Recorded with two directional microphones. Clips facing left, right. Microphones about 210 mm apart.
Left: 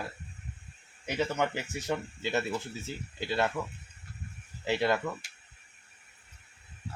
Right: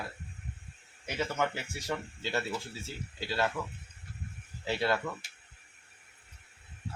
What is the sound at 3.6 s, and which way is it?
Speech, 10° left (ahead or behind).